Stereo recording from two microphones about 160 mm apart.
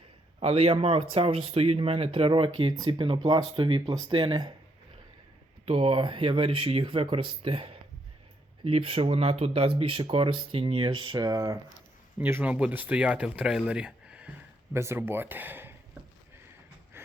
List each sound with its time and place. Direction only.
0.3 s speech: 40° right (ahead or behind)
5.6 s speech: 35° right (ahead or behind); by 14.3 s 5° right (ahead or behind)
14.7 s speech: 15° right (ahead or behind)